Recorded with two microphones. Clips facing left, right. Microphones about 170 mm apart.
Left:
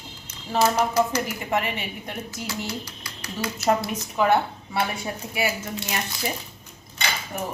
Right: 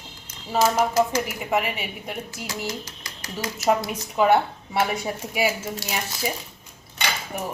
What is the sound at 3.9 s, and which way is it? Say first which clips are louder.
A woman's voice: right 2 dB; 10° right (ahead or behind).